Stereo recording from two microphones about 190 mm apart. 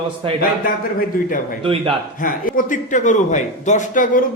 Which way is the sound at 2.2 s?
45° left (ahead or behind).